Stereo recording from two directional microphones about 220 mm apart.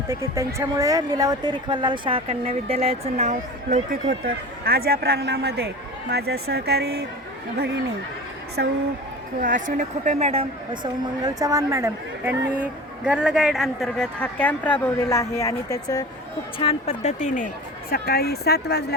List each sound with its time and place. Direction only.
0.1 s speech: 15° right (ahead or behind); by 3.3 s 30° right (ahead or behind)
4.2 s a man's voice: 40° right (ahead or behind)
8.6 s a man's voice: 50° right (ahead or behind)
9.4 s speech: 35° right (ahead or behind); by 16.0 s 15° left (ahead or behind)
16.6 s speech: 25° left (ahead or behind); by 18.9 s 50° left (ahead or behind)